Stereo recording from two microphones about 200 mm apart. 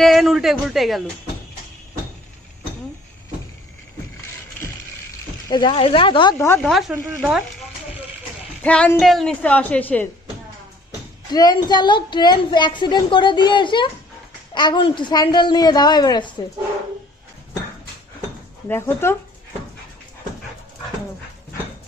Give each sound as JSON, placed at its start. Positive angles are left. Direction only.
{"t": 0.0, "sound": "a man's voice", "side_deg": 0}
{"t": 5.5, "sound": "a woman's voice", "side_deg": 25}
{"t": 6.3, "sound": "a woman's voice", "side_deg": 10}
{"t": 6.7, "sound": "a man's voice", "side_deg": -5}
{"t": 8.6, "sound": "a woman's voice", "side_deg": 5}
{"t": 11.3, "sound": "a woman's voice", "side_deg": 20}
{"t": 18.7, "sound": "a woman's voice", "side_deg": 10}